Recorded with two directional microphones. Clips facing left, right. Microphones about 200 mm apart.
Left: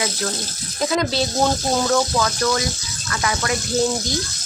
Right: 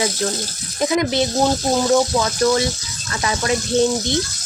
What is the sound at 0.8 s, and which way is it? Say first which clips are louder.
Speech: right 3 dB; 20° right (ahead or behind).